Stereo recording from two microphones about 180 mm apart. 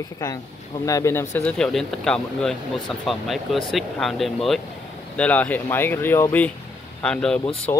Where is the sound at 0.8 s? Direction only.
15° left (ahead or behind).